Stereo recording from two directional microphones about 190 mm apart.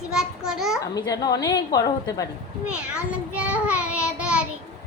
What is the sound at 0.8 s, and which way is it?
Speech, 20° left (ahead or behind).